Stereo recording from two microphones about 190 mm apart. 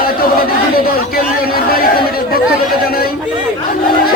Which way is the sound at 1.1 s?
50° left (ahead or behind).